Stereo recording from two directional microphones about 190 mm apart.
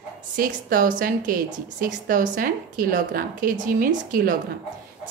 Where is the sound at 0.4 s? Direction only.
45° right (ahead or behind).